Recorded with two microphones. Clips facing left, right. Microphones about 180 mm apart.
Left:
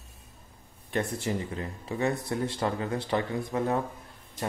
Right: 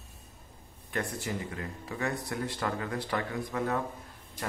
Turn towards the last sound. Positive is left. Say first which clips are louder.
# left 3 dB
turn(degrees=25)  # may be behind; listen again after turning